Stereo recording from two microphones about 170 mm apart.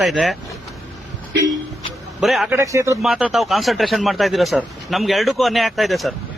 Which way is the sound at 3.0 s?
Centre (ahead or behind).